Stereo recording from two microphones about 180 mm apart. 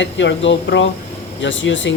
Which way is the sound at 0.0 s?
90° left.